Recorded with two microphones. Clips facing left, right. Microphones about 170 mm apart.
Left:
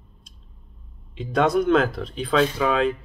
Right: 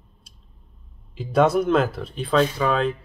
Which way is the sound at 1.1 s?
5° right (ahead or behind).